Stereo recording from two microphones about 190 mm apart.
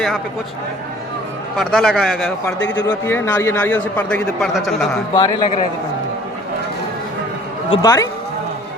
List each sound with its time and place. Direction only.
1.5 s a man's voice: centre (ahead or behind)
2.6 s speech: 70° left (ahead or behind)
2.8 s a man's voice: 15° left (ahead or behind)
5.1 s a man's voice: 20° left (ahead or behind)
7.7 s a man's voice: 20° left (ahead or behind)